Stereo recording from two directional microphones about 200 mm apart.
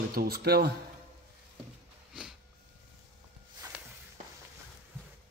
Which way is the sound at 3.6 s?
10° right (ahead or behind).